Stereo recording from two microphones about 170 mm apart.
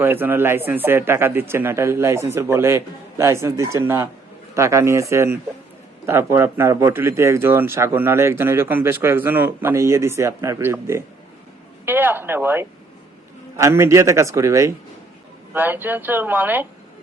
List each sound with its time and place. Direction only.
0.0 s speech: 10° right (ahead or behind)